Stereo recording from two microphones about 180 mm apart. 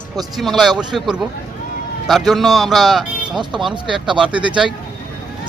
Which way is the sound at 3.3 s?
25° right (ahead or behind).